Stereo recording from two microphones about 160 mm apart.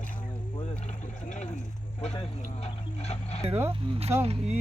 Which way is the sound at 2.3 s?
40° left (ahead or behind).